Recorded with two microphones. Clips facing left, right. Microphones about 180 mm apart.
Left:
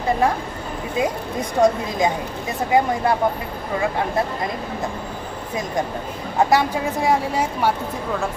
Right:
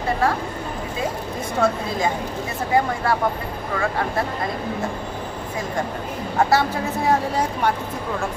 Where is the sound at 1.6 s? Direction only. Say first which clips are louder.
Left 4 dB; 15° left (ahead or behind).